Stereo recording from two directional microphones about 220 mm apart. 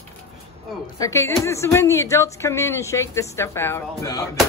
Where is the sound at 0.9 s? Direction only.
15° left (ahead or behind).